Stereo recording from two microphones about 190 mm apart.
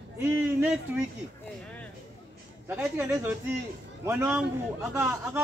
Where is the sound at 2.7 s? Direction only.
10° right (ahead or behind).